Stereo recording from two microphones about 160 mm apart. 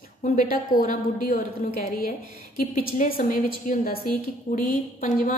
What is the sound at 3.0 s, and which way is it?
A woman's voice, 55° left (ahead or behind).